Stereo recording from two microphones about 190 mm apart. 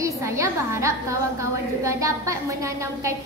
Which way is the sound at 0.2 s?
15° right (ahead or behind).